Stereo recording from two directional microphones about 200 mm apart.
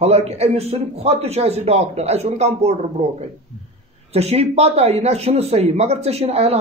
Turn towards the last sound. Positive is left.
turn(degrees=-30)  # may be behind; listen again after turning